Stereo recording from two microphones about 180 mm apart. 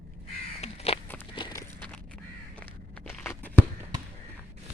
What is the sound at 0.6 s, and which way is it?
Crow, 35° left (ahead or behind).